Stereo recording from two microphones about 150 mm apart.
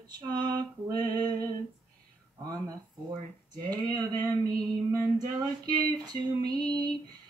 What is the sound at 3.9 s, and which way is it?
Female singing, 25° right (ahead or behind).